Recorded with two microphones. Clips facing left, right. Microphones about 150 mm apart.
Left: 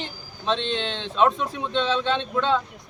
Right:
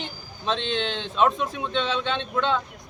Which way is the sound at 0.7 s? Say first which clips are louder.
Even; 35° left (ahead or behind).